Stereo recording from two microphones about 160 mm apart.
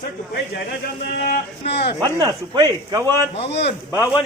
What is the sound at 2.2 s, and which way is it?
Speech, 30° right (ahead or behind).